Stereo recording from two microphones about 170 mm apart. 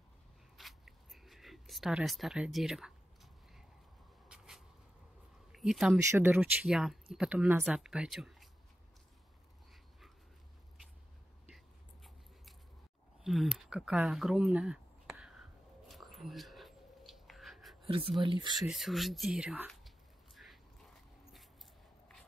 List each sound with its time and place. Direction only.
0.6 s zipper: centre (ahead or behind)
4.3 s a sound: 5° right (ahead or behind)
5.9 s speech: 15° right (ahead or behind)
11.4 s biting: centre (ahead or behind)
13.2 s a sound: centre (ahead or behind)
15.9 s writing: centre (ahead or behind)
17.8 s speech: 35° right (ahead or behind)
18.6 s speech: centre (ahead or behind)